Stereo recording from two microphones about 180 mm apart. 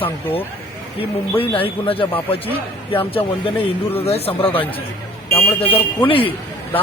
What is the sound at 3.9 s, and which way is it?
Speech, 35° left (ahead or behind).